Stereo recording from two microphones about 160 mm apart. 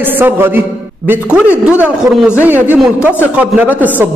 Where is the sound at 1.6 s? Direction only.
10° right (ahead or behind).